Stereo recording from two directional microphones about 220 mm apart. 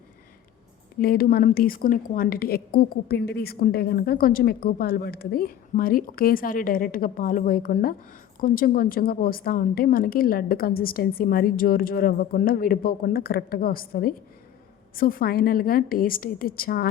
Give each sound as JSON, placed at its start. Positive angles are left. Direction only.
{"t": 0.9, "sound": "a woman's voice", "side_deg": 40}